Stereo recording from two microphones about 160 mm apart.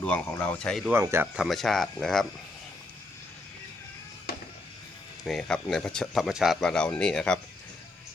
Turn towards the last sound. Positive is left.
turn(degrees=5)  # may be behind; listen again after turning